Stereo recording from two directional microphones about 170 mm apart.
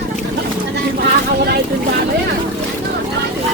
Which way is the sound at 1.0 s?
70° right (ahead or behind).